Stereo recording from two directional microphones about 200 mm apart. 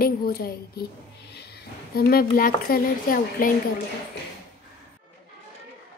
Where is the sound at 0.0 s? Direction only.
50° left (ahead or behind).